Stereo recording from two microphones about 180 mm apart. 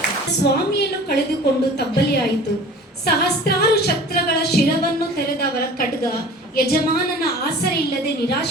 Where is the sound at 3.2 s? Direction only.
65° left (ahead or behind).